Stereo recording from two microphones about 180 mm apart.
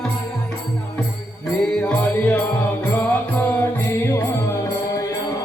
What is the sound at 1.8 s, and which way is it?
Music, 5° left (ahead or behind).